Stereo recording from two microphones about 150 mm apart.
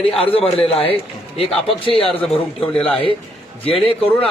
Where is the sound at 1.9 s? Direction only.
35° left (ahead or behind).